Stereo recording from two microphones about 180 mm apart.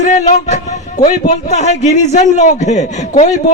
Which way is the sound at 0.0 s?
40° left (ahead or behind).